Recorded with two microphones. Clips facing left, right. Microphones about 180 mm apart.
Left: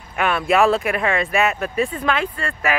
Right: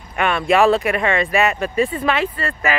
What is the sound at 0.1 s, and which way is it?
Speech, 5° left (ahead or behind).